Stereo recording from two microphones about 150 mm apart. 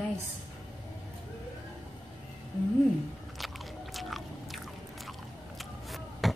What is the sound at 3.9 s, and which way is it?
Biting, centre (ahead or behind).